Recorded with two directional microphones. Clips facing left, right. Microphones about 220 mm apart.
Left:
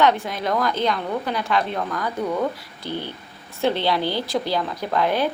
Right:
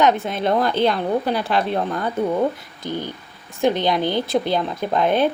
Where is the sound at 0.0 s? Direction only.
20° right (ahead or behind).